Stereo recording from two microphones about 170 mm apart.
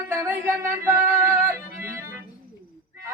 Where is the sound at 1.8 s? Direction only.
15° right (ahead or behind).